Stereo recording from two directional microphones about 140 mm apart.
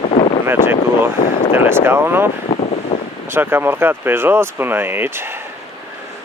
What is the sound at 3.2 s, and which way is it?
Speech, 15° right (ahead or behind).